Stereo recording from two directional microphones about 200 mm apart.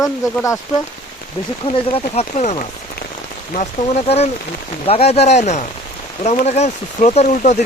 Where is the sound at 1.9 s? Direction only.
35° left (ahead or behind).